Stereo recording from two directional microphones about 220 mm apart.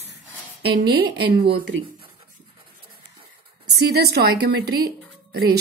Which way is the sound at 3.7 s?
45° right (ahead or behind).